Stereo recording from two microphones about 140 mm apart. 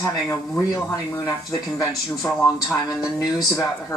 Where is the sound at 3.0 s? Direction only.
25° left (ahead or behind).